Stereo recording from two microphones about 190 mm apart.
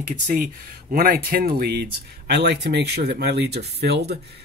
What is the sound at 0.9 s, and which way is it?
Speech, 50° right (ahead or behind).